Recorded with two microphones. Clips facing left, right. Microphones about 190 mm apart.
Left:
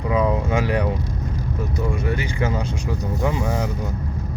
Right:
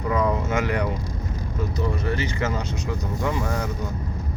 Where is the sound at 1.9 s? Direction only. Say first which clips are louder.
Left 1 dB; 10° left (ahead or behind).